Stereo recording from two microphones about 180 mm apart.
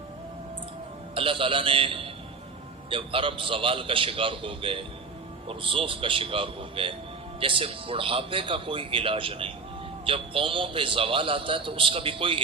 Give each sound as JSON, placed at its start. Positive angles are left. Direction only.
{"t": 1.1, "sound": "a man's voice", "side_deg": -30}